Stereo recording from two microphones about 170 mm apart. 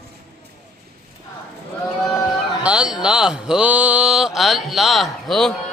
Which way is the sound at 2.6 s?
5° right (ahead or behind).